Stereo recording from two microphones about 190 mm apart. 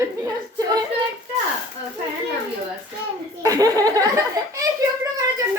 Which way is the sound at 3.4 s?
20° right (ahead or behind).